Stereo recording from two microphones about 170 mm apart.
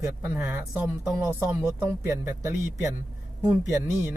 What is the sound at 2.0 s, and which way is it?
Speech, 10° right (ahead or behind).